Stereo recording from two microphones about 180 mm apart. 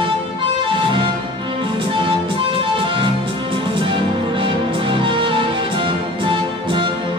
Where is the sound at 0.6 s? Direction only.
30° right (ahead or behind).